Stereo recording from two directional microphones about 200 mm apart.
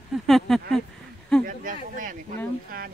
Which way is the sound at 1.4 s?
40° right (ahead or behind).